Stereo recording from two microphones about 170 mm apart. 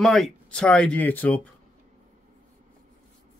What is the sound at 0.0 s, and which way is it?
Speech, centre (ahead or behind).